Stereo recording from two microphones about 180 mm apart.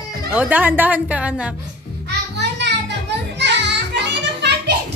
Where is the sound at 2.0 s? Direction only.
70° right (ahead or behind).